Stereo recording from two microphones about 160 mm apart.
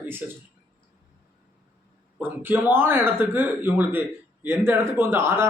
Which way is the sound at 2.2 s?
10° right (ahead or behind).